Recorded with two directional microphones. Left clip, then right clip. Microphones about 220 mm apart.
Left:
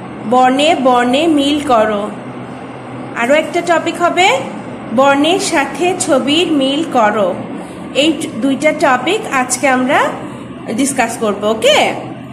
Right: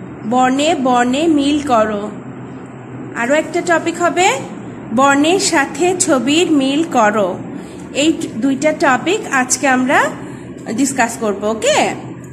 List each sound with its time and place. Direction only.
0.3 s a woman's voice: 15° right (ahead or behind)
3.2 s a woman's voice: 10° right (ahead or behind)